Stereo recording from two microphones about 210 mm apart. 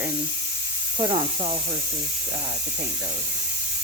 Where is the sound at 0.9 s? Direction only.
30° right (ahead or behind).